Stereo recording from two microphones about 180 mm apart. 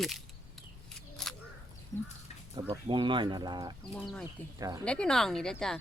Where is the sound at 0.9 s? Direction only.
5° left (ahead or behind).